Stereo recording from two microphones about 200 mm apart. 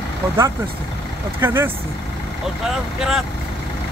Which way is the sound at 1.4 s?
10° right (ahead or behind).